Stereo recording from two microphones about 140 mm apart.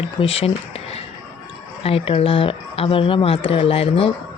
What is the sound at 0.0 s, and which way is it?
Speech, 40° left (ahead or behind).